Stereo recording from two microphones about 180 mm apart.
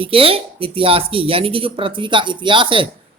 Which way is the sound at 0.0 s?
30° right (ahead or behind).